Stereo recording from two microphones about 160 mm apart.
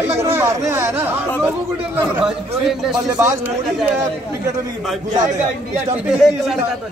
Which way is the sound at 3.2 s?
15° right (ahead or behind).